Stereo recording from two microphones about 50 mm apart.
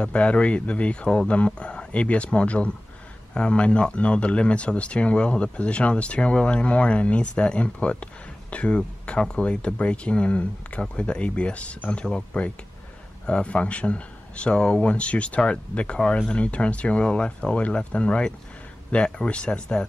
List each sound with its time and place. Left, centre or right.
0.0 s speech: left